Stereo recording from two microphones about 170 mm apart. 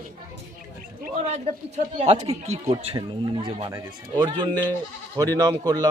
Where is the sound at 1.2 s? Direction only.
40° right (ahead or behind).